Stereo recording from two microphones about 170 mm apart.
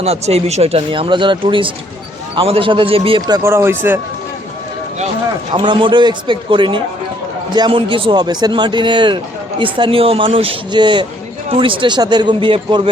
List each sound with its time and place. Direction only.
0.0 s a man's voice: 35° right (ahead or behind); by 4.0 s 15° right (ahead or behind)
5.5 s a man's voice: 30° right (ahead or behind)